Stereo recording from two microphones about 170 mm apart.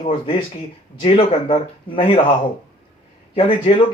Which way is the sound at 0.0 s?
30° left (ahead or behind).